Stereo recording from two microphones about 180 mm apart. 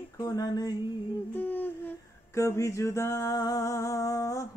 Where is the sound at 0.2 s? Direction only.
20° left (ahead or behind).